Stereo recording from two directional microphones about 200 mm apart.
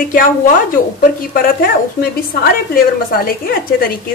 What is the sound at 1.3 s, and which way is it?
A woman's voice, 45° left (ahead or behind).